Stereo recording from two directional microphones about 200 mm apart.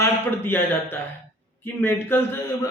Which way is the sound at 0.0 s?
10° left (ahead or behind).